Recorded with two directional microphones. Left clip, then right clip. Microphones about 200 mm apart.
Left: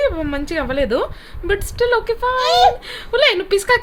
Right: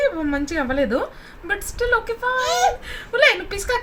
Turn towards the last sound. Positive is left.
turn(degrees=45)  # may be behind; listen again after turning